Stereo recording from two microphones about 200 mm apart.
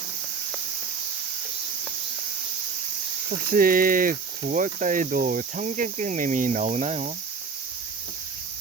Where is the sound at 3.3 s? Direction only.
45° right (ahead or behind).